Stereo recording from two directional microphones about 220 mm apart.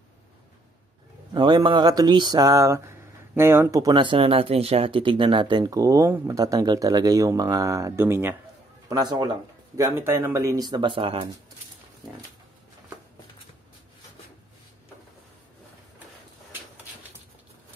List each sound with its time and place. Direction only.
1.3 s speech: 20° right (ahead or behind)